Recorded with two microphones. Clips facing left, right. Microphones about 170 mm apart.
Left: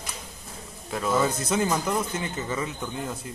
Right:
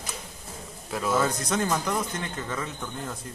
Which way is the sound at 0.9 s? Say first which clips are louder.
Left 1 dB; centre (ahead or behind).